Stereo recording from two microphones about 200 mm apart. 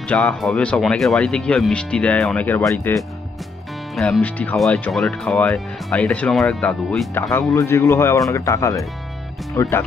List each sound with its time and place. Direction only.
0.1 s speech: 5° left (ahead or behind)
7.5 s speech: 15° left (ahead or behind)